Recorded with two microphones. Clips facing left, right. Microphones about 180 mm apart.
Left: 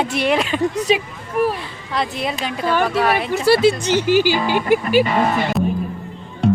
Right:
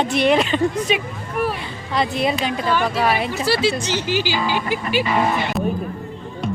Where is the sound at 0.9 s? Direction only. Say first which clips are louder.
Left 3 dB; 35° left (ahead or behind).